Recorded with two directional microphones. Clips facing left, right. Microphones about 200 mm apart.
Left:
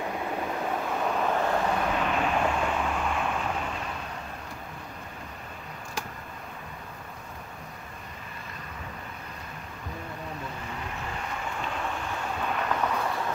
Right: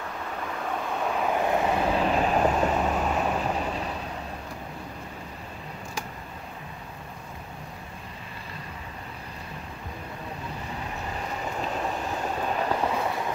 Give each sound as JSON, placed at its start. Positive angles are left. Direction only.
{"t": 1.0, "sound": "vehicle", "side_deg": 0}
{"t": 1.4, "sound": "vehicle", "side_deg": -15}
{"t": 1.8, "sound": "vehicle", "side_deg": -30}
{"t": 11.6, "sound": "vehicle", "side_deg": -35}